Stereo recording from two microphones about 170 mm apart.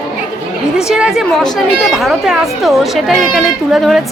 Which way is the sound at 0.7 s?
5° right (ahead or behind).